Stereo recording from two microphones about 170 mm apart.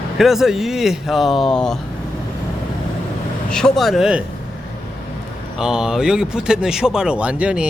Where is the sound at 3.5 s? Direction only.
5° left (ahead or behind).